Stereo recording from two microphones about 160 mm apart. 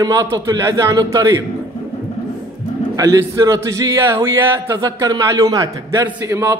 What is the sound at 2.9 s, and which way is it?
A man's voice, 20° right (ahead or behind).